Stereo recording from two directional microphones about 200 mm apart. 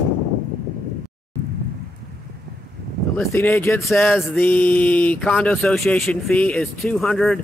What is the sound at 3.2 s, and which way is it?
Speech, 10° left (ahead or behind).